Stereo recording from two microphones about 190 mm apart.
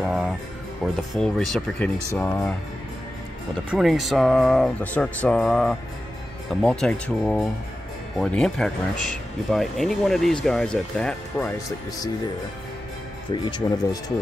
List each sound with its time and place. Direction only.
0.0 s music: centre (ahead or behind)
0.8 s speech: centre (ahead or behind)
3.7 s speech: centre (ahead or behind)
13.3 s speech: 25° left (ahead or behind)